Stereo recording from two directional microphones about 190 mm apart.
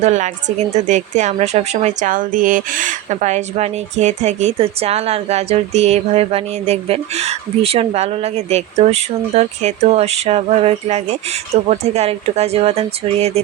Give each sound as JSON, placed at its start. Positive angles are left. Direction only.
{"t": 0.0, "sound": "a woman's voice", "side_deg": -40}